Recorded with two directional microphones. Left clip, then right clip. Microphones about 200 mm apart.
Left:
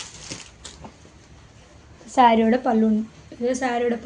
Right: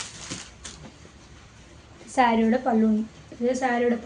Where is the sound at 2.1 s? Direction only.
40° left (ahead or behind).